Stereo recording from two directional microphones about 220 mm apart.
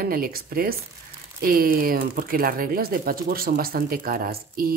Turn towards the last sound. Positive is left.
turn(degrees=-40)  # may be behind; listen again after turning